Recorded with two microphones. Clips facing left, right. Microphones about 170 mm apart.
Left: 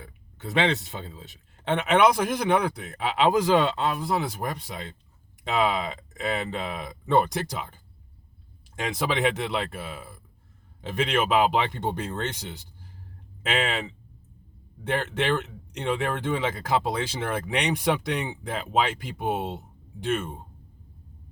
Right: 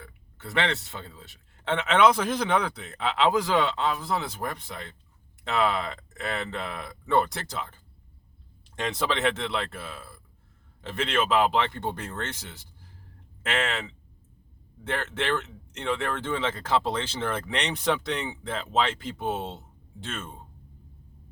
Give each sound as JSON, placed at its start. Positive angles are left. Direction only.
{"t": 0.0, "sound": "speech", "side_deg": 20}